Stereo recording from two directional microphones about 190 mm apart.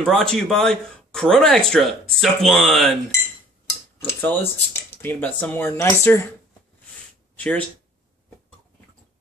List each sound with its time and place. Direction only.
0.0 s speech: 5° left (ahead or behind)
4.2 s speech: 10° left (ahead or behind)
7.3 s speech: 5° left (ahead or behind)